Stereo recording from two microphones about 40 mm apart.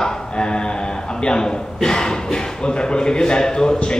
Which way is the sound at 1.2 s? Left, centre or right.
Centre.